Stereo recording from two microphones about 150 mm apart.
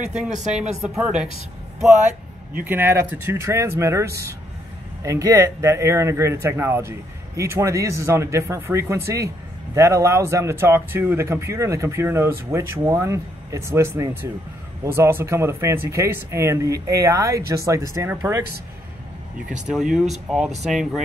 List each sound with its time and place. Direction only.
0.0 s speech: 5° right (ahead or behind)
2.6 s speech: 15° right (ahead or behind)
19.7 s speech: 5° right (ahead or behind)